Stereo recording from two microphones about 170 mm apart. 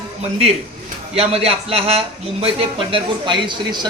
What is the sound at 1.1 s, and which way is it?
A man's voice, 35° right (ahead or behind).